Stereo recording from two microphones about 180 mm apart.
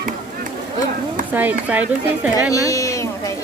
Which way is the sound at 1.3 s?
10° right (ahead or behind).